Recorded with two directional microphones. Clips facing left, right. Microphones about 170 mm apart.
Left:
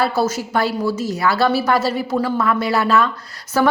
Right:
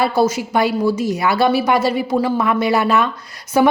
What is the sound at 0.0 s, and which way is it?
A woman's voice, 15° right (ahead or behind).